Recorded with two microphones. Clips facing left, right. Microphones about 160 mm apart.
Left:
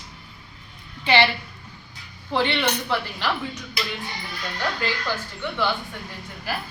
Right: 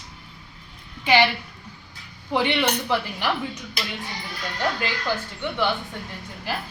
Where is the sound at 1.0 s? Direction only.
10° right (ahead or behind).